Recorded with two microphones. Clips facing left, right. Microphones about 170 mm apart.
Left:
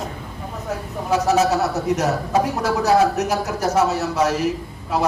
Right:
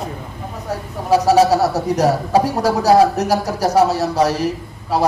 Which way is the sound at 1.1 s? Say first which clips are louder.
Right 5 dB; 35° right (ahead or behind).